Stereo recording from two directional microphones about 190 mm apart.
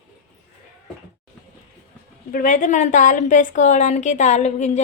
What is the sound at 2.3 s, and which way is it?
A woman's voice, 45° left (ahead or behind).